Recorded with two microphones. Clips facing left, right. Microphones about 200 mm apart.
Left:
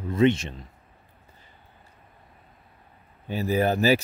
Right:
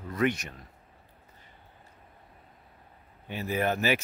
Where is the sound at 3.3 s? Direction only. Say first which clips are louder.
Left 5 dB; 35° left (ahead or behind).